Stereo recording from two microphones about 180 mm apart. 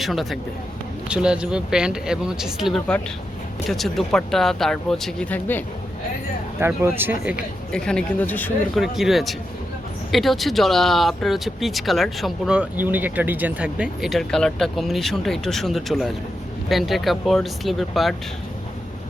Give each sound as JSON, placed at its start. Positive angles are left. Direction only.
{"t": 0.0, "sound": "speech", "side_deg": 0}
{"t": 6.6, "sound": "speech", "side_deg": -10}
{"t": 7.7, "sound": "speech", "side_deg": 5}
{"t": 8.8, "sound": "speech", "side_deg": 0}